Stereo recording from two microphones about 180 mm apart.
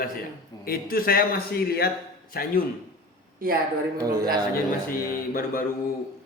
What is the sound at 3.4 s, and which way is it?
Speech, 55° right (ahead or behind).